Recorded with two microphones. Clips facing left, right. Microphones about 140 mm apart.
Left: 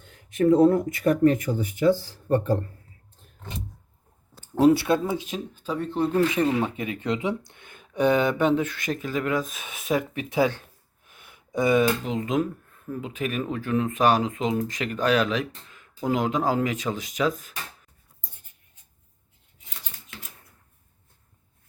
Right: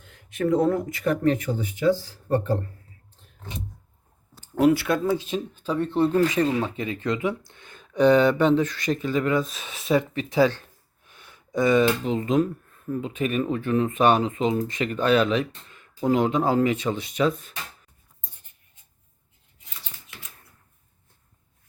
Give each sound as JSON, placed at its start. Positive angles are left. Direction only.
{"t": 0.5, "sound": "speech", "side_deg": 30}
{"t": 4.5, "sound": "speech", "side_deg": 25}
{"t": 6.3, "sound": "speech", "side_deg": 20}
{"t": 10.2, "sound": "a sound", "side_deg": 15}
{"t": 12.9, "sound": "speech", "side_deg": 0}